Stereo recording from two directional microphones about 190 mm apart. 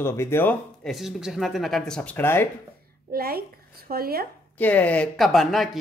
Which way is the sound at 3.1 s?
50° right (ahead or behind).